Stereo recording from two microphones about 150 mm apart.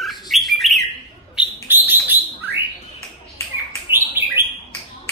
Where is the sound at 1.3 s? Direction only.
10° right (ahead or behind).